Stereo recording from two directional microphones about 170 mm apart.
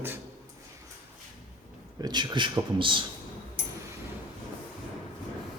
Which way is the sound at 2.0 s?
25° right (ahead or behind).